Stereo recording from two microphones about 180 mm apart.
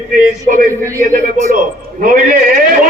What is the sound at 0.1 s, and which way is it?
Speech, 50° right (ahead or behind).